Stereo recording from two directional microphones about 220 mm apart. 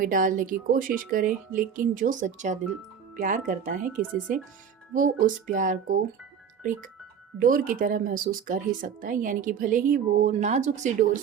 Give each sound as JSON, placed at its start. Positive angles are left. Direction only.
{"t": 0.0, "sound": "speech", "side_deg": -35}
{"t": 4.9, "sound": "speech", "side_deg": -35}